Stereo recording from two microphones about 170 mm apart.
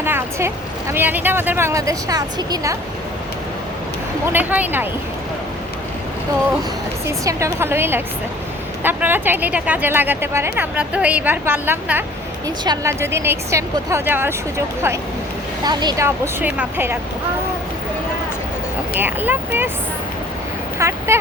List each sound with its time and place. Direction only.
0.0 s speech: 15° right (ahead or behind)
4.3 s speech: 10° right (ahead or behind)
7.1 s speech: 15° right (ahead or behind)
15.6 s speech: 25° right (ahead or behind)
16.0 s speech: 10° right (ahead or behind)
18.9 s speech: 10° right (ahead or behind)
20.7 s speech: 15° right (ahead or behind)